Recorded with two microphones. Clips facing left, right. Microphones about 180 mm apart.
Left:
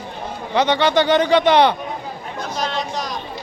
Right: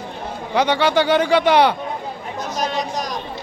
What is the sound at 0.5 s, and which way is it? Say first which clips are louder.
Speech: left 1 dB; 10° right (ahead or behind).